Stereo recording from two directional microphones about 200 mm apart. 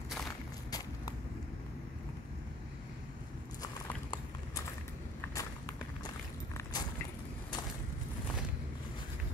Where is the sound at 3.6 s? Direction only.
20° left (ahead or behind).